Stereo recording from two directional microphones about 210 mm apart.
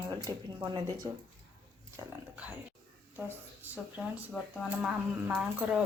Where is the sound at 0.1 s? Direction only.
20° right (ahead or behind).